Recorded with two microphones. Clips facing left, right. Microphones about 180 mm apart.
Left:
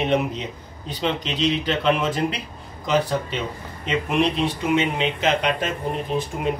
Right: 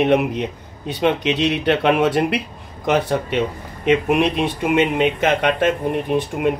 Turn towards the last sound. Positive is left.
turn(degrees=-60)  # may be behind; listen again after turning